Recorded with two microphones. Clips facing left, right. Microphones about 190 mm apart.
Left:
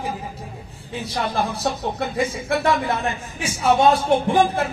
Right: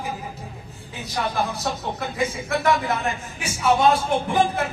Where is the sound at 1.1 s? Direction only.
30° left (ahead or behind).